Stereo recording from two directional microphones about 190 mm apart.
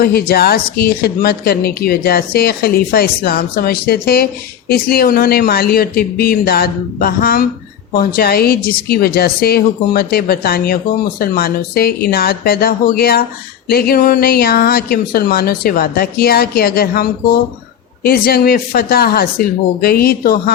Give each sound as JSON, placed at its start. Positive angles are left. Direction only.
{"t": 0.0, "sound": "a woman's voice", "side_deg": 55}